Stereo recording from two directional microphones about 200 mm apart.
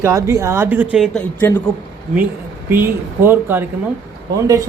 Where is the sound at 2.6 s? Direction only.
10° right (ahead or behind).